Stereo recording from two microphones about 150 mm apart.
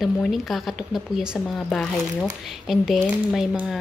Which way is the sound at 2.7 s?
Centre (ahead or behind).